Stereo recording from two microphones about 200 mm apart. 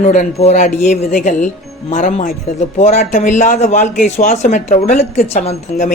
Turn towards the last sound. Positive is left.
turn(degrees=35)  # may be behind; listen again after turning